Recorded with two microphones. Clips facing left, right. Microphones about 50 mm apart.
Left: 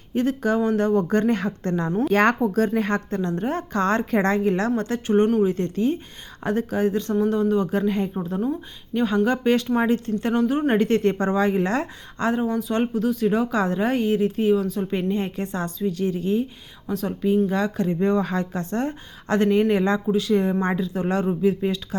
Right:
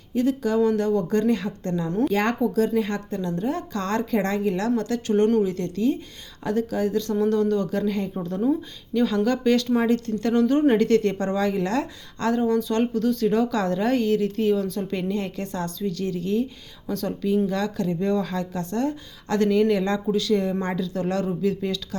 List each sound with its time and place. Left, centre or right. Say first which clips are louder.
0.1 s a woman's voice: even; left
7.2 s speech: left 1 dB; centre
8.2 s a woman's voice: right 2 dB; centre
10.4 s a woman's voice: right 4 dB; centre
10.8 s speech: even; left